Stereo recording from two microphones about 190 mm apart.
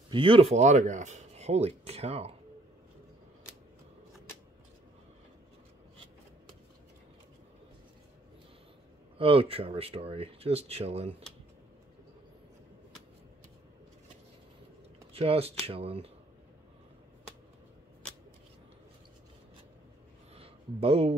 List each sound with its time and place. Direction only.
0.1 s speech: 25° right (ahead or behind)
9.2 s speech: 30° right (ahead or behind)
15.1 s speech: 30° right (ahead or behind)
20.3 s a sound: 30° right (ahead or behind)